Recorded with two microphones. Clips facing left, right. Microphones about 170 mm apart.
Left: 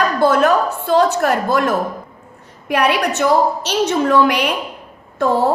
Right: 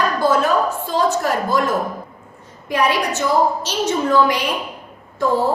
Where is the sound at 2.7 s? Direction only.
65° left (ahead or behind).